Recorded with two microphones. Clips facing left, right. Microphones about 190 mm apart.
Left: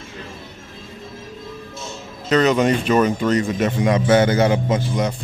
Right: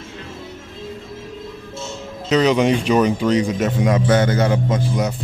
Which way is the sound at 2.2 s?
10° right (ahead or behind).